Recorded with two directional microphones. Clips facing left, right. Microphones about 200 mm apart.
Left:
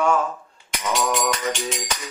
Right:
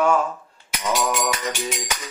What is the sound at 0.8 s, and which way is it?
Music, 5° right (ahead or behind).